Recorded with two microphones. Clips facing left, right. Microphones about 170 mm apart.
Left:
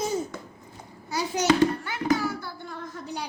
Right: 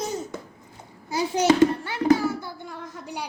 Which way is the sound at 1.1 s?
25° right (ahead or behind).